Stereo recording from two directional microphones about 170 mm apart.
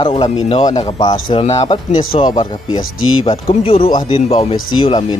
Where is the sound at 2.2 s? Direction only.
25° left (ahead or behind).